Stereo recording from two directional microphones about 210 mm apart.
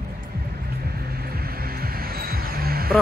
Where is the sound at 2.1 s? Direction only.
45° right (ahead or behind).